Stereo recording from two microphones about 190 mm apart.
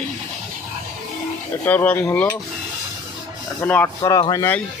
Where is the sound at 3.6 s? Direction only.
10° left (ahead or behind).